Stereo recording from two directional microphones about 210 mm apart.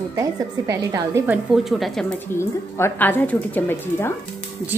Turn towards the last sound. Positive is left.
turn(degrees=10)  # may be behind; listen again after turning